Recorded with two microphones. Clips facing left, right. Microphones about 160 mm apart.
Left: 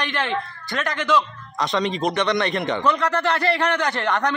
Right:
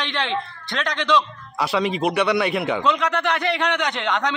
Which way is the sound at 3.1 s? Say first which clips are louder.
Left 1 dB; 15° right (ahead or behind).